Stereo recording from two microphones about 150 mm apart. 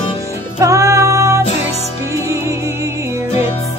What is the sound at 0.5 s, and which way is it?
Music, 20° right (ahead or behind).